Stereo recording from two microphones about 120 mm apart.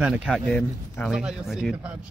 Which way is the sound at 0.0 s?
10° right (ahead or behind).